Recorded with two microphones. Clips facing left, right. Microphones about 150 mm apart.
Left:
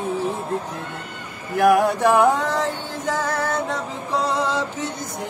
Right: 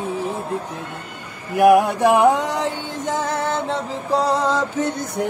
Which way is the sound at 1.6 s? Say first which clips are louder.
Right 3 dB; 15° right (ahead or behind).